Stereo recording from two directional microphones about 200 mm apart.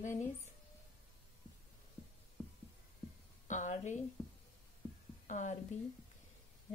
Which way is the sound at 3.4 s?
35° left (ahead or behind).